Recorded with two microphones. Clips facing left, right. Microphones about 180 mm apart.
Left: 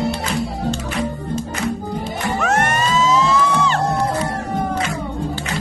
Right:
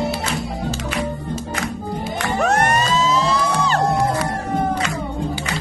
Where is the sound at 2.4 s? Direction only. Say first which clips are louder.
Right 2 dB; 35° right (ahead or behind).